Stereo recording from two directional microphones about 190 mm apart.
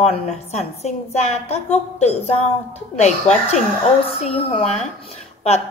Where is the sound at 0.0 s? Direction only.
35° left (ahead or behind).